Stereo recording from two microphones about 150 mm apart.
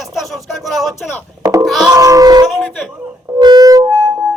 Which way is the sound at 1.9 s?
20° right (ahead or behind).